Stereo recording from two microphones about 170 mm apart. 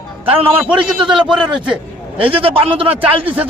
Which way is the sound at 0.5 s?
5° right (ahead or behind).